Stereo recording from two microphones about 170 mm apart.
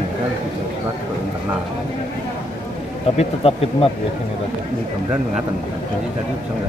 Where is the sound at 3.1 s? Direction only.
35° left (ahead or behind).